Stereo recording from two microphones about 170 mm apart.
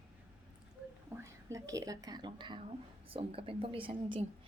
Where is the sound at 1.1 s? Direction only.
15° right (ahead or behind).